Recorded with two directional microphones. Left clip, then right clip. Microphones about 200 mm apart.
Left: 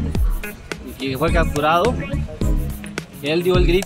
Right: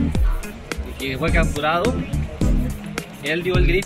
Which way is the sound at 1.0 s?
15° left (ahead or behind).